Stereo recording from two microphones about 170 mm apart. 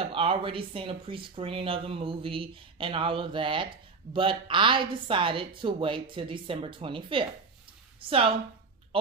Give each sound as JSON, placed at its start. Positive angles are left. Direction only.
{"t": 0.0, "sound": "speech", "side_deg": -35}